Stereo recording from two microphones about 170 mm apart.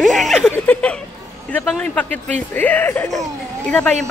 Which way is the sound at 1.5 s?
5° left (ahead or behind).